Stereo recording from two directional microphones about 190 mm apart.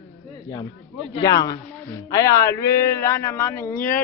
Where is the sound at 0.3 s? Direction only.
20° left (ahead or behind).